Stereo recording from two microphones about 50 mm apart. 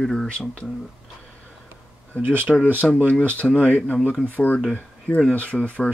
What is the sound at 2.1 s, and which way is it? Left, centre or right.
Speech, left.